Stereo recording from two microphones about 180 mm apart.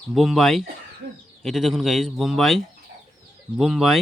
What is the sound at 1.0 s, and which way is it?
Speech, 65° right (ahead or behind).